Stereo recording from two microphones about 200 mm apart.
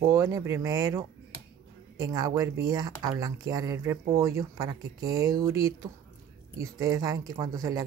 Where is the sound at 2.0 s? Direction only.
15° right (ahead or behind).